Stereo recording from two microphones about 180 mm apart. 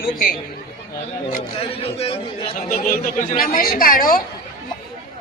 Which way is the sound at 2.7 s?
50° left (ahead or behind).